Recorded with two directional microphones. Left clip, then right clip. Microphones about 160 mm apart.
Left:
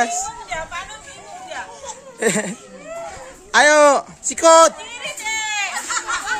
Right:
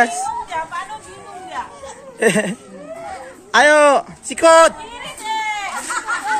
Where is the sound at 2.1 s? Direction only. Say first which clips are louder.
Right 4 dB; 5° left (ahead or behind).